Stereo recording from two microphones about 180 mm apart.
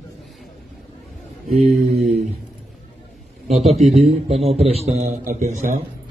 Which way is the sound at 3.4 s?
35° right (ahead or behind).